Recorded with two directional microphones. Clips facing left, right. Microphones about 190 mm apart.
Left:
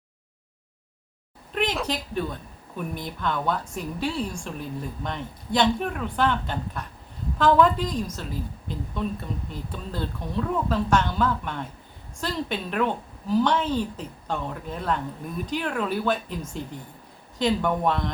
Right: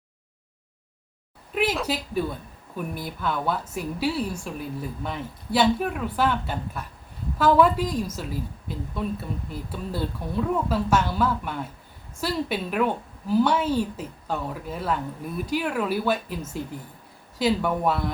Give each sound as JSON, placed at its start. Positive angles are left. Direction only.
{"t": 1.5, "sound": "a woman's voice", "side_deg": -5}